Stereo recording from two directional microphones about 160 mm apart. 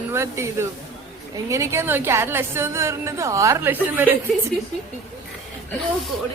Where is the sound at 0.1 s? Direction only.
15° right (ahead or behind).